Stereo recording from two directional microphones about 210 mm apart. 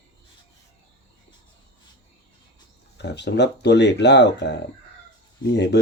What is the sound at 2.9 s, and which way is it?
Speech, 55° left (ahead or behind).